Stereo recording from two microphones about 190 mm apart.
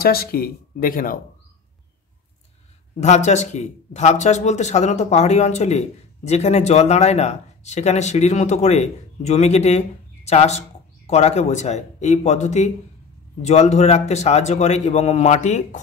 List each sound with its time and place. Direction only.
0.0 s speech: 55° left (ahead or behind)
3.0 s speech: 35° left (ahead or behind)